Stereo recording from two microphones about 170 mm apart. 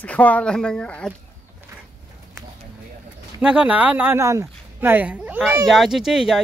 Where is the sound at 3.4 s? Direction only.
5° right (ahead or behind).